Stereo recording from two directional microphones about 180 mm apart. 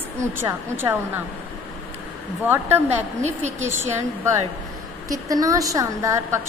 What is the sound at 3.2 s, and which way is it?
Speech, 40° right (ahead or behind).